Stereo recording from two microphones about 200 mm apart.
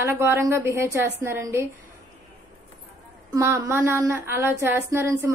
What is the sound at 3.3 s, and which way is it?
A woman's voice, 15° right (ahead or behind).